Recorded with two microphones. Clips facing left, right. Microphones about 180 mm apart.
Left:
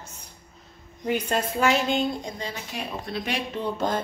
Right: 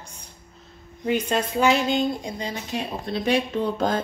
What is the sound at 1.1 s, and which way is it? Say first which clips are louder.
Speech: right 2 dB; 5° left (ahead or behind).